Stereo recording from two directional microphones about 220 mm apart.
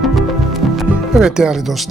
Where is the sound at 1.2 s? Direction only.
5° right (ahead or behind).